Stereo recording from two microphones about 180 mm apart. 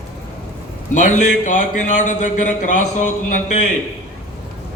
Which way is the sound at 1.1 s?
45° left (ahead or behind).